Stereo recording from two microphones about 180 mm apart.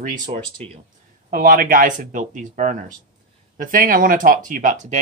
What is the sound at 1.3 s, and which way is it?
Speech, 50° right (ahead or behind).